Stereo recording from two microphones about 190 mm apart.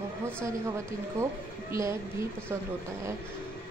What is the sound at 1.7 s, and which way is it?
Speech, 15° right (ahead or behind).